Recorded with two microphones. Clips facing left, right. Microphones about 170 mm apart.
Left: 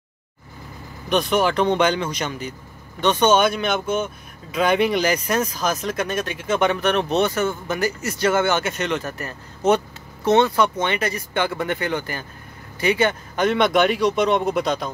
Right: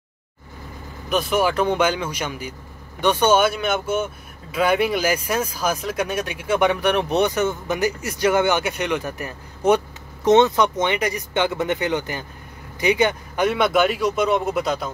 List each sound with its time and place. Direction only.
1.0 s speech: 5° right (ahead or behind)